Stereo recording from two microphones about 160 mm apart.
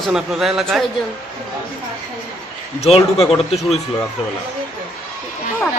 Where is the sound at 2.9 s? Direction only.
35° left (ahead or behind).